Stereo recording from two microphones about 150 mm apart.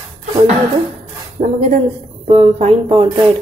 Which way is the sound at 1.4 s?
45° right (ahead or behind).